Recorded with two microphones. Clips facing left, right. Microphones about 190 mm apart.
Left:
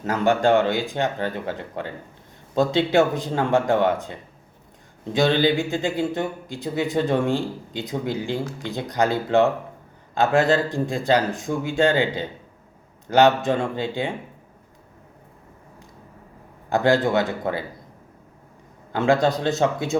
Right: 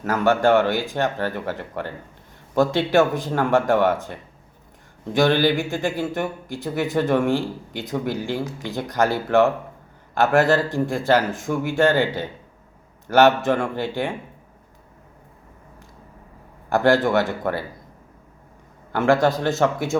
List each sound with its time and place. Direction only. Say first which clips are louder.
0.0 s speech: right 1 dB; 20° left (ahead or behind)
5.1 s speech: right 1 dB; 20° left (ahead or behind)
13.5 s speech: right 1 dB; 20° left (ahead or behind)
16.8 s speech: right 1 dB; 20° left (ahead or behind)
18.9 s speech: right 1 dB; 15° left (ahead or behind)